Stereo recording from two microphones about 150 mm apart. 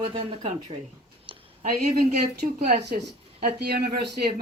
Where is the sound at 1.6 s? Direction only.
90° right.